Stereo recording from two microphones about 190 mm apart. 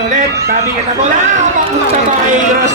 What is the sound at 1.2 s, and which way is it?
Speech, 40° right (ahead or behind).